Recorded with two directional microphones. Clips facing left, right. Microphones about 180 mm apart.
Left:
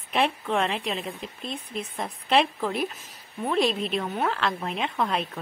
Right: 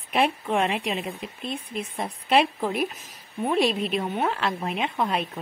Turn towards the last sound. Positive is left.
turn(degrees=-10)  # may be behind; listen again after turning